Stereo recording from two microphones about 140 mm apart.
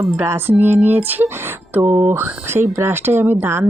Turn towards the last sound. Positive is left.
turn(degrees=-15)  # may be behind; listen again after turning